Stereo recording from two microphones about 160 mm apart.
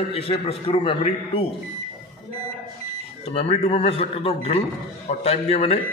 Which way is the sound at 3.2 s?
40° left (ahead or behind).